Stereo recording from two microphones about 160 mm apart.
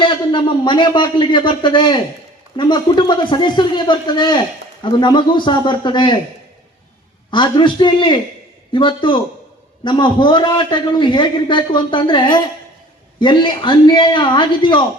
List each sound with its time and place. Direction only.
0.0 s a man's voice: 30° left (ahead or behind)
7.3 s a man's voice: 30° left (ahead or behind)